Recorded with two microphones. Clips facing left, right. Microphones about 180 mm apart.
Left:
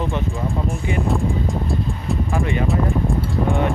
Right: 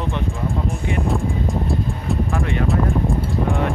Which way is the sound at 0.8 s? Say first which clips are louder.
Left 1 dB; centre (ahead or behind).